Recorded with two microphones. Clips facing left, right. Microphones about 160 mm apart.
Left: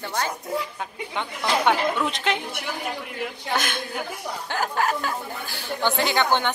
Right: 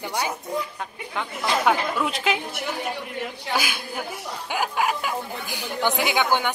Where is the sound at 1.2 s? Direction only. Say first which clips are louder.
Even; centre (ahead or behind).